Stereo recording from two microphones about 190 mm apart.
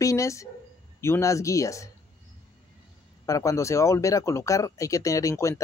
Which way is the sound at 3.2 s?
15° left (ahead or behind).